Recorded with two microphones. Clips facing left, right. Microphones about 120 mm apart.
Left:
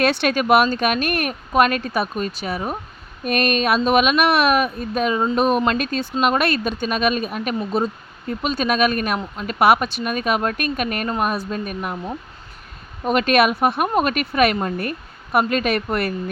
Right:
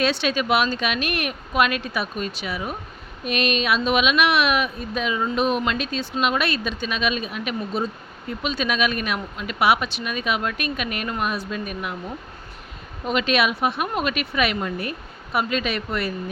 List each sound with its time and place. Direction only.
0.0 s speech: 55° left (ahead or behind)
13.1 s speech: 50° left (ahead or behind)